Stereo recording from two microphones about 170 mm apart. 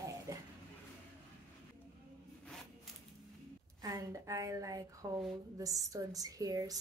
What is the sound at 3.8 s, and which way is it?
A woman's voice, 20° right (ahead or behind).